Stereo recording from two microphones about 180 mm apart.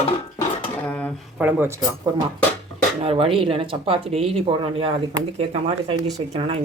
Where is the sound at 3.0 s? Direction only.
30° right (ahead or behind).